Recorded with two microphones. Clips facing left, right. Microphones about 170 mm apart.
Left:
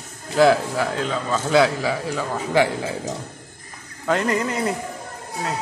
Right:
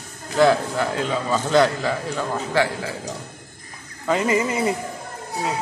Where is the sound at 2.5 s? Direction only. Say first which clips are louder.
Left 3 dB; 15° left (ahead or behind).